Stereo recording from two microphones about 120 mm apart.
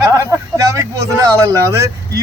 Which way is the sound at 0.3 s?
25° right (ahead or behind).